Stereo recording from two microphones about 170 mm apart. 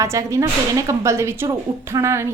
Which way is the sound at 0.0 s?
20° right (ahead or behind).